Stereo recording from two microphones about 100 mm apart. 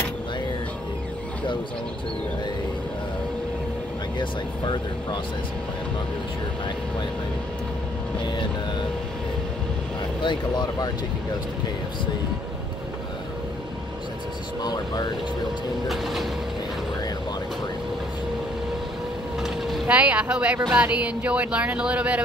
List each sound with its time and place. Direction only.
4.2 s speech: 50° left (ahead or behind)
10.2 s speech: 50° left (ahead or behind)
14.6 s speech: 45° left (ahead or behind)
15.9 s a sound: centre (ahead or behind)
19.4 s vehicle: centre (ahead or behind)
19.9 s speech: 15° right (ahead or behind)